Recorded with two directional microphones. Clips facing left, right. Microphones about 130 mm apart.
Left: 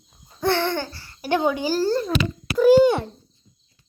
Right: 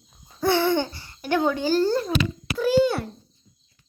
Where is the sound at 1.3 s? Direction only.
15° left (ahead or behind).